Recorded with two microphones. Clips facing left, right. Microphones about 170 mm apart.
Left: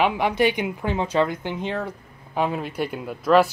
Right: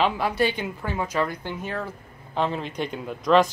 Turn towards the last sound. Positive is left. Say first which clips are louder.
# left 2 dB
turn(degrees=10)  # may be behind; listen again after turning